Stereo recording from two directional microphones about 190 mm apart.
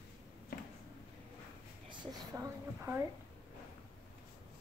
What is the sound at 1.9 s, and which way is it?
A woman's voice, 15° right (ahead or behind).